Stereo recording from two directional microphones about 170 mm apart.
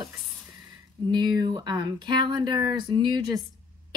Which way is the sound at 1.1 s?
25° right (ahead or behind).